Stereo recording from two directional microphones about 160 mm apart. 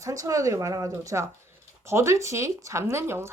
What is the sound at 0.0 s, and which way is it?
A woman's voice, 20° right (ahead or behind).